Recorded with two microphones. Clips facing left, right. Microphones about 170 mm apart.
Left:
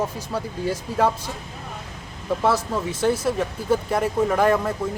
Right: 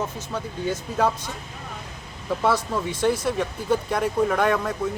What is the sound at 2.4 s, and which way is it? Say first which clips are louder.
Speech: left 1 dB; centre (ahead or behind).